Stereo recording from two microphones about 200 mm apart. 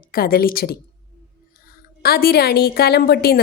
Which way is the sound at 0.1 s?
45° left (ahead or behind).